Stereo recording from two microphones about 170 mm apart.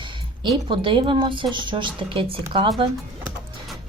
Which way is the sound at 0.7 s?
30° right (ahead or behind).